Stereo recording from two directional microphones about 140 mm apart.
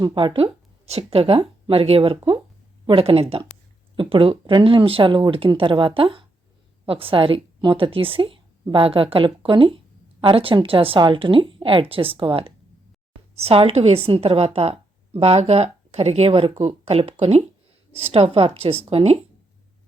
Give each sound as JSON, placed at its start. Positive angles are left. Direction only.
{"t": 0.0, "sound": "a woman's voice", "side_deg": -30}